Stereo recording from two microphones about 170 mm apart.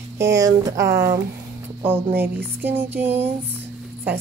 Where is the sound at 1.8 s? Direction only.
10° right (ahead or behind).